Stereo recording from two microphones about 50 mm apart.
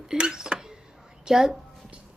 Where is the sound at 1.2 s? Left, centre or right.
Centre.